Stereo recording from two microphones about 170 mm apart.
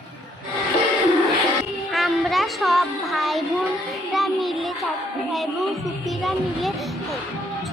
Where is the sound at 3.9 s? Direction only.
Centre (ahead or behind).